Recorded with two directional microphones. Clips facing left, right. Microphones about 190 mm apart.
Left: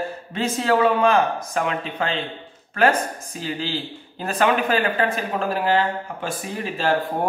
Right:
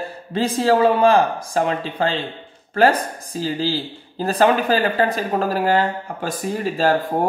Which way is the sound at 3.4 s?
35° right (ahead or behind).